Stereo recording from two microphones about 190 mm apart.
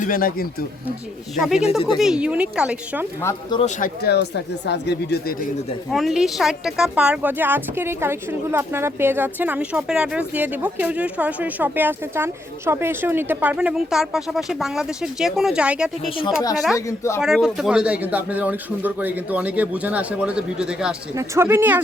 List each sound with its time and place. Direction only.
0.0 s speech: 50° left (ahead or behind)
1.4 s speech: centre (ahead or behind)
3.2 s speech: 15° left (ahead or behind)
3.8 s speech: 50° left (ahead or behind)
5.9 s a woman's voice: centre (ahead or behind)
16.0 s speech: 30° left (ahead or behind)
16.7 s speech: 15° left (ahead or behind)
17.2 s a woman's voice: centre (ahead or behind)